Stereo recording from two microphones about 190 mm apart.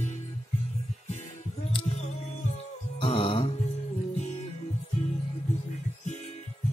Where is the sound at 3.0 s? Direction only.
30° left (ahead or behind).